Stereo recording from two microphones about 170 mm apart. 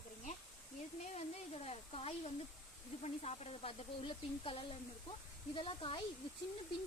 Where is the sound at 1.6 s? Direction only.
35° left (ahead or behind).